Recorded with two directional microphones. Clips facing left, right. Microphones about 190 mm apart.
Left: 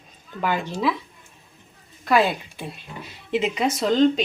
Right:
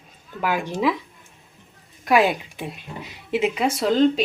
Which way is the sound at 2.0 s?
15° right (ahead or behind).